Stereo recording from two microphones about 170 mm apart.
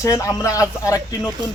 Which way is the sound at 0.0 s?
20° left (ahead or behind).